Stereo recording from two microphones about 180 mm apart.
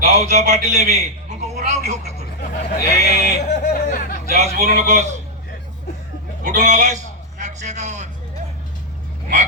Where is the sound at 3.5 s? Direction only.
45° left (ahead or behind).